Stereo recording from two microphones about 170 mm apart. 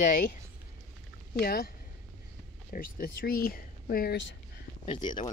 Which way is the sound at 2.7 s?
55° left (ahead or behind).